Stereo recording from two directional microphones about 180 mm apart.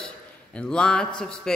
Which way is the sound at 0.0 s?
5° left (ahead or behind).